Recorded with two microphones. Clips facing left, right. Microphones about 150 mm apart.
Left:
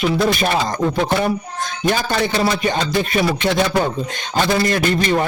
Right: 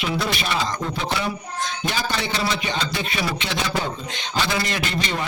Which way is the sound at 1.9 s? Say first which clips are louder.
Left 9 dB; 50° left (ahead or behind).